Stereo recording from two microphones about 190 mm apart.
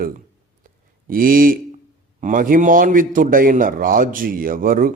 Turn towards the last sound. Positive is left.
turn(degrees=-45)  # may be behind; listen again after turning